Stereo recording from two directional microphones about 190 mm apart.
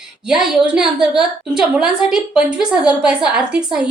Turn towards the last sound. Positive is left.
turn(degrees=-5)  # may be behind; listen again after turning